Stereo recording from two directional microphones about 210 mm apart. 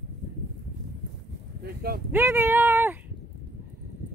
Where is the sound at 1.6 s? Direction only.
50° right (ahead or behind).